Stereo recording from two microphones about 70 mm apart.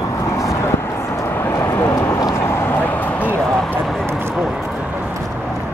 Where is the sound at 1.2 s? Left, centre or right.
Left.